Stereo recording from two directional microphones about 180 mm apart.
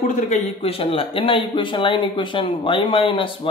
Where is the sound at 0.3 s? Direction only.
35° left (ahead or behind).